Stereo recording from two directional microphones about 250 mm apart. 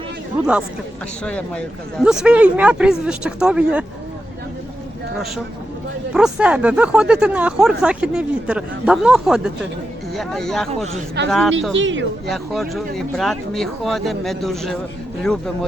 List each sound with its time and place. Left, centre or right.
0.3 s speech: centre
1.2 s speech: centre
6.1 s speech: centre
11.7 s speech: right
12.3 s speech: centre